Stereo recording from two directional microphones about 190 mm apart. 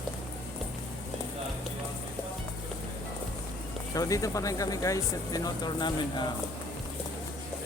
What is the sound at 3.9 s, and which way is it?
Speech, 15° left (ahead or behind).